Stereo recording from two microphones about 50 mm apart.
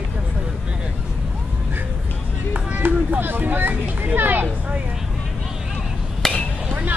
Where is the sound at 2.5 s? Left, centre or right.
Right.